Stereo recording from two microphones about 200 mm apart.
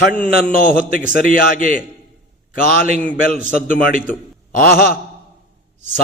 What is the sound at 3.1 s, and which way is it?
Speech, 45° left (ahead or behind).